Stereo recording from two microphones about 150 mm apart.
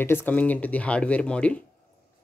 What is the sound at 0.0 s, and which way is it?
Speech, 15° left (ahead or behind).